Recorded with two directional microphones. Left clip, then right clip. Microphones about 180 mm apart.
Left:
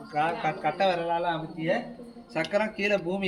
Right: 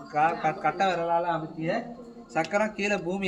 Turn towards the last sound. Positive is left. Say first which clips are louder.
# left 2 dB
turn(degrees=0)  # may be behind; listen again after turning